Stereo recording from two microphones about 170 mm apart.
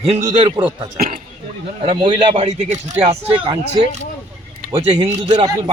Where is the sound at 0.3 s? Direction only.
25° right (ahead or behind).